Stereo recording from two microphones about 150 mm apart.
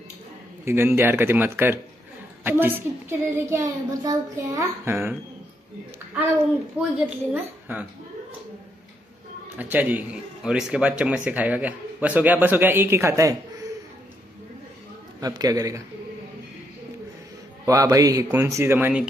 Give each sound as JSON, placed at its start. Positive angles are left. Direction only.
{"t": 0.7, "sound": "speech", "side_deg": -15}
{"t": 6.8, "sound": "a woman's voice", "side_deg": -10}
{"t": 9.6, "sound": "speech", "side_deg": -10}
{"t": 15.1, "sound": "speech", "side_deg": -25}
{"t": 17.6, "sound": "speech", "side_deg": -20}